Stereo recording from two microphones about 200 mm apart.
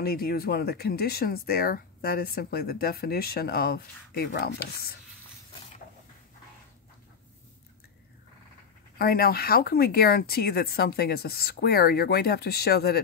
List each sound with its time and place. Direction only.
0.0 s speech: 50° left (ahead or behind)
8.9 s speech: 50° left (ahead or behind)